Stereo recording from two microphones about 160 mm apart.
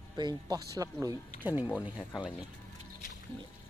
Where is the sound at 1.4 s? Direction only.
10° right (ahead or behind).